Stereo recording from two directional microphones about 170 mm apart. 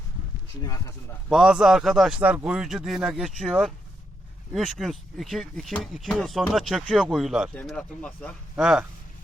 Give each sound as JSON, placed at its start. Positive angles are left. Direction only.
{"t": 0.6, "sound": "speech", "side_deg": 20}
{"t": 1.3, "sound": "speech", "side_deg": -5}